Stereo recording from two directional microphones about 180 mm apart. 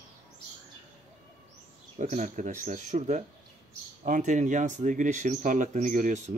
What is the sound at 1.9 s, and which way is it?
Speech, 40° right (ahead or behind).